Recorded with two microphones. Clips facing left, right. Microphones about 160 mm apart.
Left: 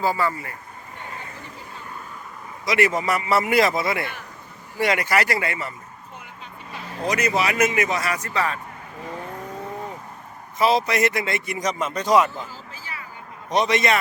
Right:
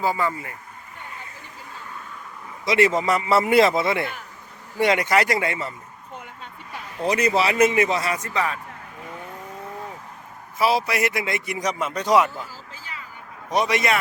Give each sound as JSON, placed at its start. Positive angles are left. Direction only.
{"t": 0.0, "sound": "a man's voice", "side_deg": -15}
{"t": 2.6, "sound": "speech", "side_deg": -25}
{"t": 7.0, "sound": "speech", "side_deg": -30}
{"t": 10.6, "sound": "a man's voice", "side_deg": -10}
{"t": 13.5, "sound": "a man's voice", "side_deg": -10}